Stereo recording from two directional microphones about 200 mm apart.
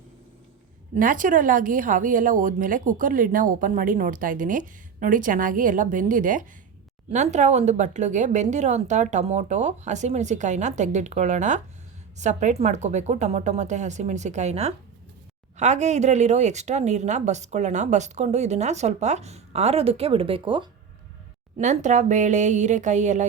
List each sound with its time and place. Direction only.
0.9 s speech: 40° right (ahead or behind); by 20.7 s 25° right (ahead or behind)
21.6 s speech: 35° right (ahead or behind)